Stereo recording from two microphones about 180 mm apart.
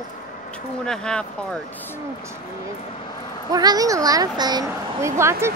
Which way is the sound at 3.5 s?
20° right (ahead or behind).